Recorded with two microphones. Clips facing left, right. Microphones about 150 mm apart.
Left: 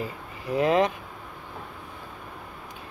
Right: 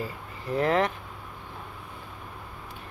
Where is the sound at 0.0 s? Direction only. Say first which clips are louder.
Left 1 dB; 15° left (ahead or behind).